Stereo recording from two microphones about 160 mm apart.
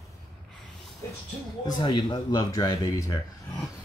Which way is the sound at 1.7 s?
30° left (ahead or behind).